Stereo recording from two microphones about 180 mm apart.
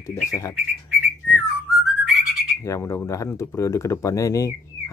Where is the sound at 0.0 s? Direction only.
15° left (ahead or behind).